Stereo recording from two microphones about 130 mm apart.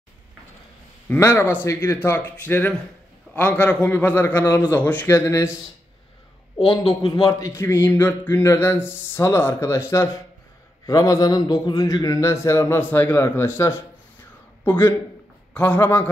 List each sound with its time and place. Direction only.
1.0 s speech: 15° left (ahead or behind)
7.0 s a man's voice: 30° left (ahead or behind); by 16.1 s 10° left (ahead or behind)